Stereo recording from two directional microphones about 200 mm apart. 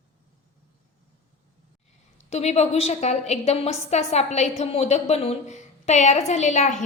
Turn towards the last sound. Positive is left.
turn(degrees=35)  # may be behind; listen again after turning